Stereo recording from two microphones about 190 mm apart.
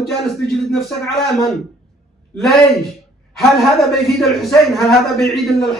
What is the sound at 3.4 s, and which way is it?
A man's voice, centre (ahead or behind).